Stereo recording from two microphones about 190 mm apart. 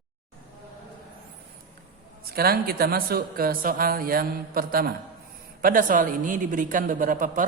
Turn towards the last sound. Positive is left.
turn(degrees=-45)  # may be behind; listen again after turning